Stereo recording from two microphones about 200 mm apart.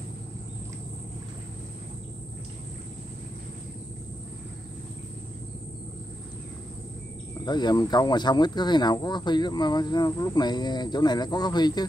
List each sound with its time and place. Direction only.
7.4 s speech: 20° left (ahead or behind)